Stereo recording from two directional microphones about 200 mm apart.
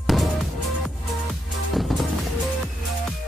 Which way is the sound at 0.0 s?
Centre (ahead or behind).